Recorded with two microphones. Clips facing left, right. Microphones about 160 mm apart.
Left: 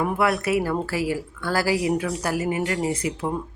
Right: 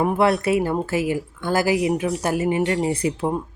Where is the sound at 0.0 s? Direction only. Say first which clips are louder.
Right 4 dB; 30° right (ahead or behind).